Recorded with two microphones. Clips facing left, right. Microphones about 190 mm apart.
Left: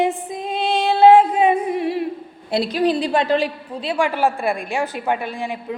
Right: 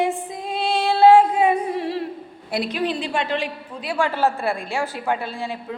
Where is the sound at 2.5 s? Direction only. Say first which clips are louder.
Left 5 dB; 30° left (ahead or behind).